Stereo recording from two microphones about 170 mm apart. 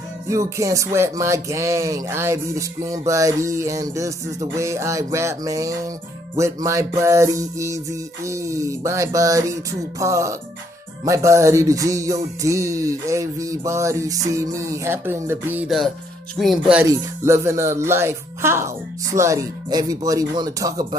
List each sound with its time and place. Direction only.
0.3 s music: 20° right (ahead or behind)
16.3 s speech: centre (ahead or behind)
16.9 s music: 15° right (ahead or behind)